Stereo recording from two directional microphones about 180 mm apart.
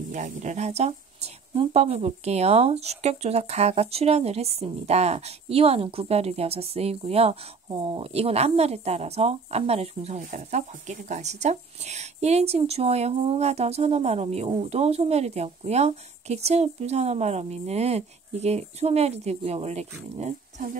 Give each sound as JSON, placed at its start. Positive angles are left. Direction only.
{"t": 0.1, "sound": "speech", "side_deg": -40}